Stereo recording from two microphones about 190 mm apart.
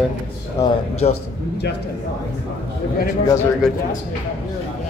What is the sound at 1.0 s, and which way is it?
Speech, 35° left (ahead or behind).